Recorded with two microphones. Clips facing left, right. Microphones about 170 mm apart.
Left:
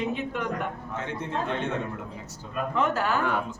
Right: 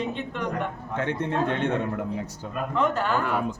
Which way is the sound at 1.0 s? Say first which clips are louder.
Right 6 dB; 60° right (ahead or behind).